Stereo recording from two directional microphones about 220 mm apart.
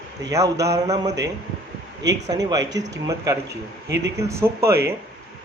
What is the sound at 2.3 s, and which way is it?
A man's voice, 15° right (ahead or behind).